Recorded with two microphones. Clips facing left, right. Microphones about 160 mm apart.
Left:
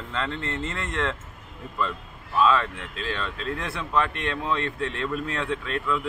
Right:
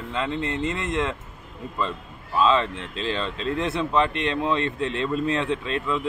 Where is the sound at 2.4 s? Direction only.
25° right (ahead or behind).